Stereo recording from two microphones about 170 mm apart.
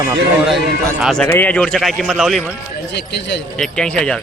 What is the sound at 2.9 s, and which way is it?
Speech, 80° left.